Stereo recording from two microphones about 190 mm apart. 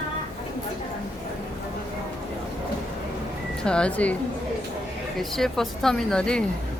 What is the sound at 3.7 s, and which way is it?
Speech, 5° left (ahead or behind).